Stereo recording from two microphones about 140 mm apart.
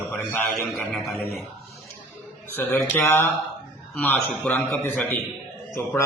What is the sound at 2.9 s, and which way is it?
Speech, 15° left (ahead or behind).